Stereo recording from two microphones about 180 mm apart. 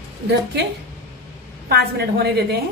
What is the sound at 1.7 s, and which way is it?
Speech, 65° right (ahead or behind).